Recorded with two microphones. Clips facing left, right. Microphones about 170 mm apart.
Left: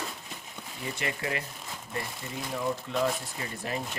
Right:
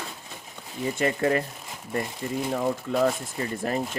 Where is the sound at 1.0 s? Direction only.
45° right (ahead or behind).